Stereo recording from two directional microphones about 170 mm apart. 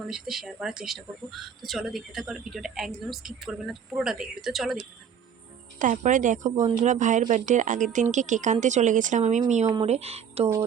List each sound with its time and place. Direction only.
0.1 s speech: centre (ahead or behind)
5.8 s speech: 50° right (ahead or behind)